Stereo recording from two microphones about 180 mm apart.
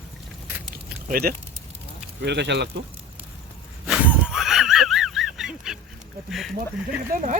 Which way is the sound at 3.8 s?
5° right (ahead or behind).